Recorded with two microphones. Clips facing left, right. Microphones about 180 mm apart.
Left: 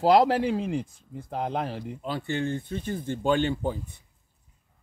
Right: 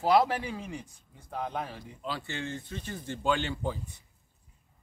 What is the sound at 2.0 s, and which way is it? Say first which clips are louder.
Speech: left 7 dB; 55° left (ahead or behind).